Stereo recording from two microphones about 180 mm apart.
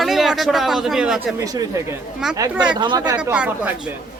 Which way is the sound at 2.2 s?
5° right (ahead or behind).